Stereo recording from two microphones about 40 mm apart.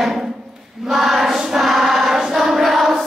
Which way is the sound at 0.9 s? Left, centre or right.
Centre.